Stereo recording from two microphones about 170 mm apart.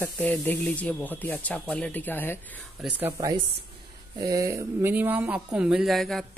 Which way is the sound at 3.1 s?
20° right (ahead or behind).